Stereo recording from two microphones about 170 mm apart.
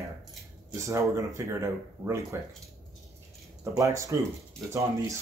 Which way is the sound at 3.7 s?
20° right (ahead or behind).